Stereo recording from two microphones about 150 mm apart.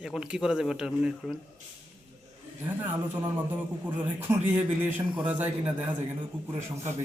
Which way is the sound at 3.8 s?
15° right (ahead or behind).